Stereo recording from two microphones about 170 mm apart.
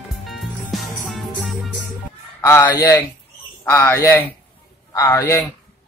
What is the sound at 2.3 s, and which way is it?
A man's voice, 15° left (ahead or behind).